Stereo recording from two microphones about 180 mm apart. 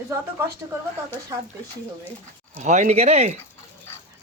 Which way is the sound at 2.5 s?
40° right (ahead or behind).